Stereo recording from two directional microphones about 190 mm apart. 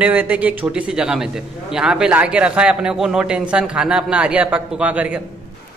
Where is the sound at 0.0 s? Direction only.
10° right (ahead or behind).